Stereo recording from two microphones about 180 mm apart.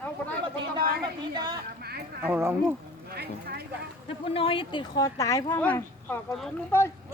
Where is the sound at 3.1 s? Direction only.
60° right (ahead or behind).